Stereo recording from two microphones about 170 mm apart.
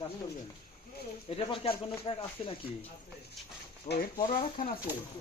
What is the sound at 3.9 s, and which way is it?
Speech, 65° left (ahead or behind).